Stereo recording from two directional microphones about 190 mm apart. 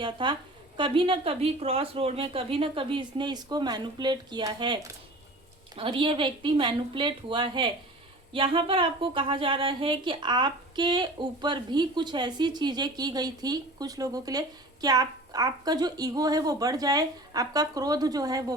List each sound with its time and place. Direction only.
0.0 s a woman's voice: 25° right (ahead or behind)